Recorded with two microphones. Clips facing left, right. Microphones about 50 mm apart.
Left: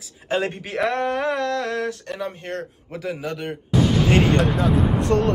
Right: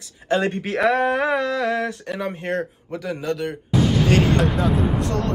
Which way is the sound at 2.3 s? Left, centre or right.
Right.